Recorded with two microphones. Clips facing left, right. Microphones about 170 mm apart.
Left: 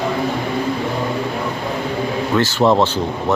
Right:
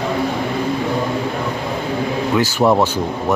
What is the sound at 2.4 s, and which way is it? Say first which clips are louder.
Speech: even; 10° right (ahead or behind).